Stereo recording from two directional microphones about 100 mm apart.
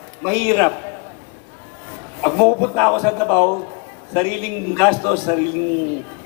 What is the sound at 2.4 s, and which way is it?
A man's voice, 30° left (ahead or behind).